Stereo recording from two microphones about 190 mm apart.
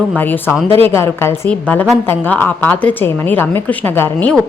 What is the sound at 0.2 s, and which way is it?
A woman's voice, 10° left (ahead or behind).